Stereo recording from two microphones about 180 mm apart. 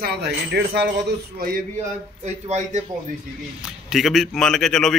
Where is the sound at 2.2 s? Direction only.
40° right (ahead or behind).